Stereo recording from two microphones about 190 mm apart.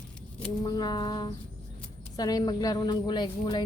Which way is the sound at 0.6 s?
20° left (ahead or behind).